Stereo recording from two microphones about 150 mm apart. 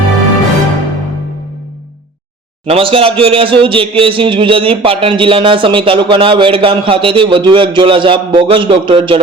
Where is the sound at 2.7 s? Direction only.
40° right (ahead or behind).